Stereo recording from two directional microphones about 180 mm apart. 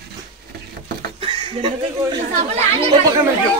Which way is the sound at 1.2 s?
30° right (ahead or behind).